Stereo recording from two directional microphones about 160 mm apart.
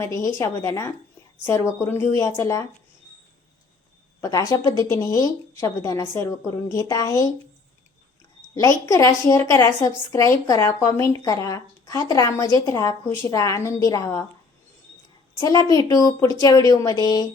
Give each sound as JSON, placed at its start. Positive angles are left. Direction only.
{"t": 0.0, "sound": "speech", "side_deg": 15}
{"t": 4.2, "sound": "speech", "side_deg": 20}
{"t": 8.5, "sound": "speech", "side_deg": 20}
{"t": 15.4, "sound": "speech", "side_deg": 25}